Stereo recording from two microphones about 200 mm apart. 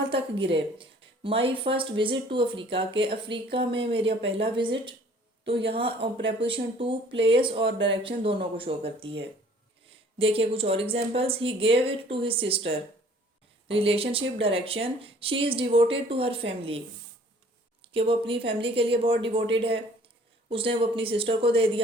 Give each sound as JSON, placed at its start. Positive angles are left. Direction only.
{"t": 0.1, "sound": "a sound", "side_deg": -30}
{"t": 0.5, "sound": "speech", "side_deg": -25}
{"t": 7.7, "sound": "speech", "side_deg": -65}
{"t": 8.0, "sound": "speech", "side_deg": -25}
{"t": 17.8, "sound": "speech", "side_deg": -25}